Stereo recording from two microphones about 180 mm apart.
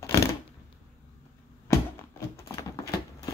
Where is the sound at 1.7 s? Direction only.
15° left (ahead or behind).